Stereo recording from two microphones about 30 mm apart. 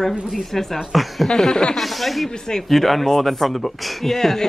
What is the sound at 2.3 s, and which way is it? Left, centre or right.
Speech, left.